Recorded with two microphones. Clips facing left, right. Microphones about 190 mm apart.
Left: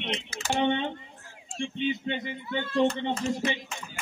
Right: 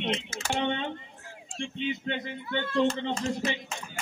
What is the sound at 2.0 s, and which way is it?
Speech, 25° left (ahead or behind).